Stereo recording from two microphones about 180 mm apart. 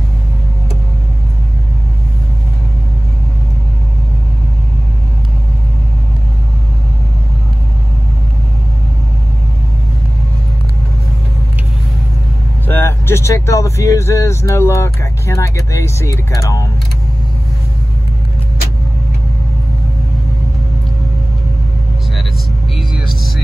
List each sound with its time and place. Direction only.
12.6 s speech: 15° left (ahead or behind)
22.8 s music: centre (ahead or behind)